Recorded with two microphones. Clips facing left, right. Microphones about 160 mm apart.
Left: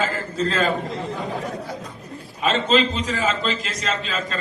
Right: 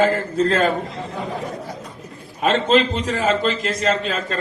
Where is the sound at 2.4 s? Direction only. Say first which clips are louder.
Right 3 dB; 60° right (ahead or behind).